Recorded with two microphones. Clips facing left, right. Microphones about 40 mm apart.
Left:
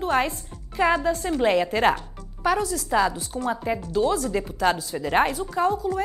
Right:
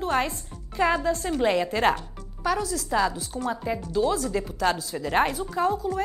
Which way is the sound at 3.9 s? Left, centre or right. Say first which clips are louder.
Left 1 dB; centre.